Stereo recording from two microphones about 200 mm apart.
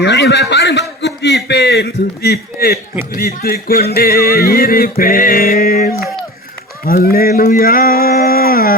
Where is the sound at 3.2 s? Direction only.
50° left (ahead or behind).